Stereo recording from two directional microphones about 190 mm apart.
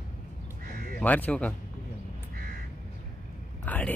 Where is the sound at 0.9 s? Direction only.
10° left (ahead or behind).